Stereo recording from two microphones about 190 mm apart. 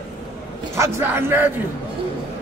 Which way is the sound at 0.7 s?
15° right (ahead or behind).